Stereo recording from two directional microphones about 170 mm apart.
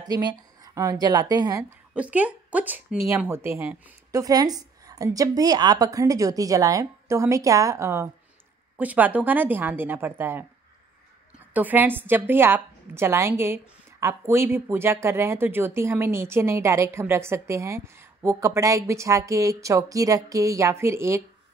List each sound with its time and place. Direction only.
0.0 s a woman's voice: 25° right (ahead or behind)
2.0 s a woman's voice: 10° right (ahead or behind)